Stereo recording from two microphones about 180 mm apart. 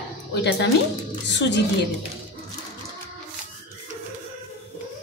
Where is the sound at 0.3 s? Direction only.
70° left (ahead or behind).